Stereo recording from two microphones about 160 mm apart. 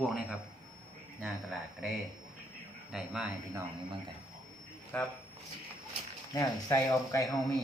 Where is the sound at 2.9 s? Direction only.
5° right (ahead or behind).